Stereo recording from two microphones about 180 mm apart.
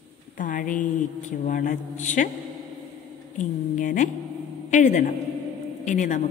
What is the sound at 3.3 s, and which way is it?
A woman's voice, 45° left (ahead or behind).